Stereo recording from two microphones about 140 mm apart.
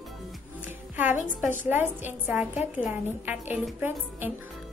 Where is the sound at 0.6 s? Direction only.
10° right (ahead or behind).